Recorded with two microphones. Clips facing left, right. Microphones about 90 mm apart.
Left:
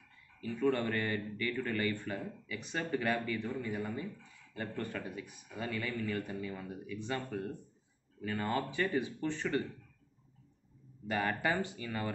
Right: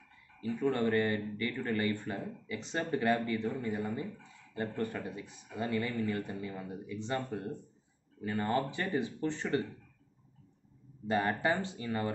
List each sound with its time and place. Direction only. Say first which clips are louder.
0.4 s speech: right 1 dB; 25° right (ahead or behind)
11.1 s speech: right 3 dB; 25° right (ahead or behind)